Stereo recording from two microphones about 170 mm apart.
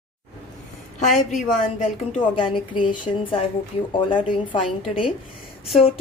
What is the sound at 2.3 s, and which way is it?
A woman's voice, 30° left (ahead or behind).